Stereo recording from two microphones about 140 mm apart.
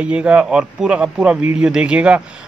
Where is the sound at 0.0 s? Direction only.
10° right (ahead or behind).